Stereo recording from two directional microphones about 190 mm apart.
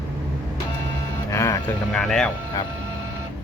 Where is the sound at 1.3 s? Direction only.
15° left (ahead or behind).